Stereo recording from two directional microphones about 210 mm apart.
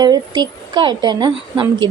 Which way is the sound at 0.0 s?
20° right (ahead or behind).